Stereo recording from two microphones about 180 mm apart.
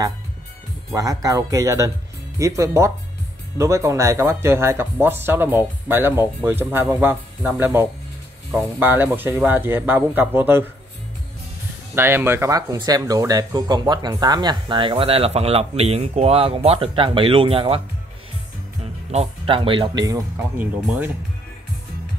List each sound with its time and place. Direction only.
0.9 s speech: 20° right (ahead or behind)
11.9 s speech: 15° right (ahead or behind); by 17.8 s 30° right (ahead or behind)
19.1 s speech: 30° right (ahead or behind); by 21.1 s 15° right (ahead or behind)